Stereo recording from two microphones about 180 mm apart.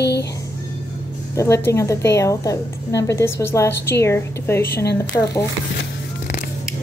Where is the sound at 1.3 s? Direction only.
15° left (ahead or behind).